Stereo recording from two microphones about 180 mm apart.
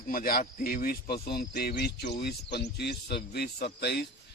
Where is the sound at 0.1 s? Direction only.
55° left (ahead or behind).